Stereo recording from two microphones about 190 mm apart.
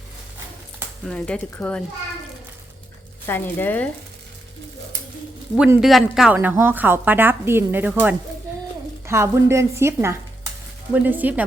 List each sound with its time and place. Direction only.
1.0 s speech: 5° left (ahead or behind)
3.2 s speech: 10° left (ahead or behind)
5.5 s a woman's voice: 5° right (ahead or behind)